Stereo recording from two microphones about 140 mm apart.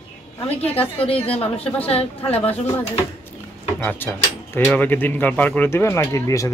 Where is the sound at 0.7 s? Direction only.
40° left (ahead or behind).